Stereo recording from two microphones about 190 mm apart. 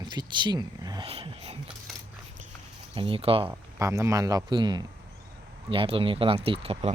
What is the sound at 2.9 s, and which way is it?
Speech, 30° right (ahead or behind).